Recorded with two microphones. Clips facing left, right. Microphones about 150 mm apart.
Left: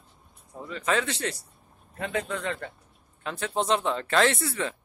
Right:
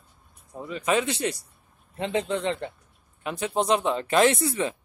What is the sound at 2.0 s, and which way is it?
Speech, 25° right (ahead or behind).